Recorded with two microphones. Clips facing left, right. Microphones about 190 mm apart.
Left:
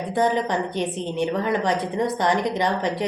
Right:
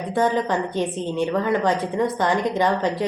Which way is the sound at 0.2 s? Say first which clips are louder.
Right 1 dB; 20° left (ahead or behind).